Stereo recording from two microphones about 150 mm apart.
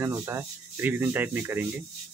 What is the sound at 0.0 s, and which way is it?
Speech, 15° right (ahead or behind).